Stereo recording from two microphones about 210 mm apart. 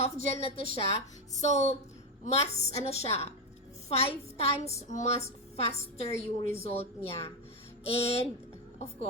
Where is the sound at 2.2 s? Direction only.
30° left (ahead or behind).